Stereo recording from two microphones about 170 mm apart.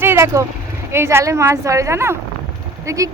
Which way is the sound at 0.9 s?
15° right (ahead or behind).